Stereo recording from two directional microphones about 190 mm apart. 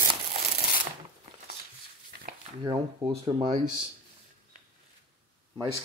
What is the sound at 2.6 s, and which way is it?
Speech, 25° right (ahead or behind).